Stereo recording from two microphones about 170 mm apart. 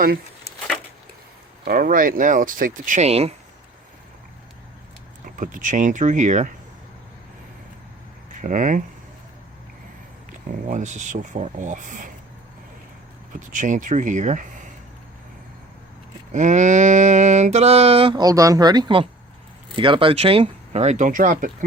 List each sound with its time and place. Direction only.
1.6 s speech: 60° right (ahead or behind); by 3.3 s 35° right (ahead or behind)
5.2 s speech: 50° right (ahead or behind)
8.4 s speech: 50° right (ahead or behind)
10.7 s speech: 45° right (ahead or behind)
13.5 s speech: 50° right (ahead or behind)
16.3 s mantra: 45° right (ahead or behind)